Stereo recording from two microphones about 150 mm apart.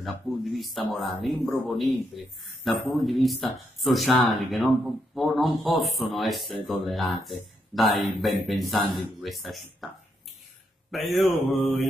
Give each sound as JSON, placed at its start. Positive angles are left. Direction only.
{"t": 0.0, "sound": "speech", "side_deg": 0}
{"t": 10.9, "sound": "speech", "side_deg": 0}